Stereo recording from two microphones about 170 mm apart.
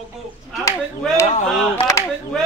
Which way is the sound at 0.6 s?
15° left (ahead or behind).